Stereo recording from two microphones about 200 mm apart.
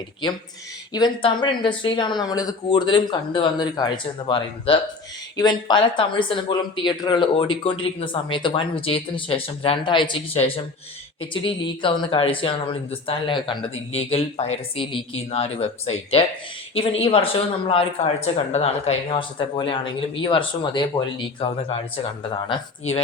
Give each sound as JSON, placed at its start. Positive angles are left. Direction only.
{"t": 0.2, "sound": "speech", "side_deg": 20}
{"t": 22.4, "sound": "speech", "side_deg": 25}